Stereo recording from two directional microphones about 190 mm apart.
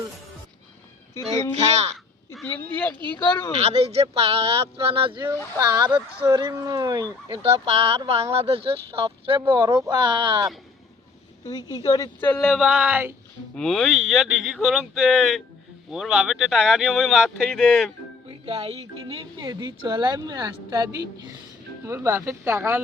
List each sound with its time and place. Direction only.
1.5 s speech: 35° right (ahead or behind)
2.3 s speech: 5° left (ahead or behind)
3.6 s speech: 35° right (ahead or behind)
11.4 s speech: 20° left (ahead or behind); by 13.1 s 10° right (ahead or behind)
13.6 s speech: 5° left (ahead or behind)
18.3 s speech: 30° right (ahead or behind); by 22.8 s 15° right (ahead or behind)